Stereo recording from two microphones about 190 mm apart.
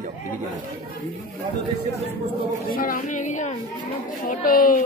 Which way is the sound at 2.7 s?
45° left (ahead or behind).